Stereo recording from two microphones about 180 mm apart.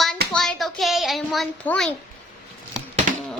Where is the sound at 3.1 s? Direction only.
50° right (ahead or behind).